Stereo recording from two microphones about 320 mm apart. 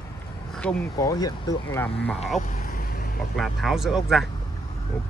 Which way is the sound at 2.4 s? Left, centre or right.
Left.